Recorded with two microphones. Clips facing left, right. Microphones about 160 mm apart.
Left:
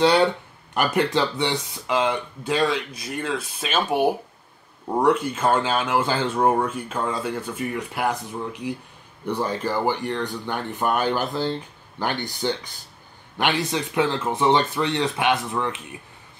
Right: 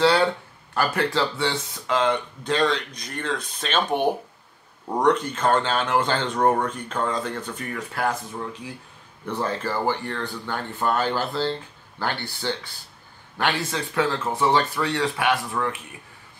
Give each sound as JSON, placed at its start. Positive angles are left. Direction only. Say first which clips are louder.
{"t": 0.0, "sound": "speech", "louder": "left 1 dB", "side_deg": 20}